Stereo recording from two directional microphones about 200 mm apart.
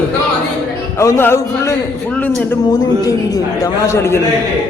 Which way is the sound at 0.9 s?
15° left (ahead or behind).